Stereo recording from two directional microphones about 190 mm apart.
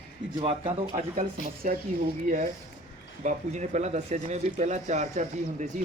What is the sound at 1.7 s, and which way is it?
Speech, 45° right (ahead or behind).